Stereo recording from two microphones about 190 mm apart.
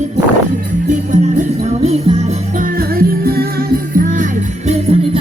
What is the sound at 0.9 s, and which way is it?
Music, 40° right (ahead or behind).